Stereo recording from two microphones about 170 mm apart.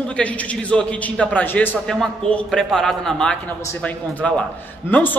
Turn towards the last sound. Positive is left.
turn(degrees=10)  # may be behind; listen again after turning